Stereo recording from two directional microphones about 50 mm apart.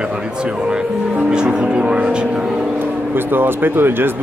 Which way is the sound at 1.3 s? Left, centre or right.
Centre.